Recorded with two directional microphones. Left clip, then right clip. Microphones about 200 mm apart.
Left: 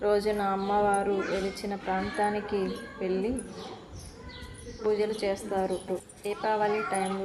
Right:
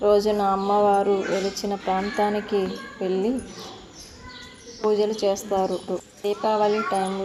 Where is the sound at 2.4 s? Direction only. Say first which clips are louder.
Right 6 dB; 20° right (ahead or behind).